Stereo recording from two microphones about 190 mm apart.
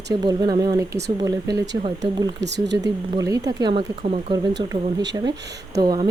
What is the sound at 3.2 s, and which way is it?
Speech, 20° right (ahead or behind).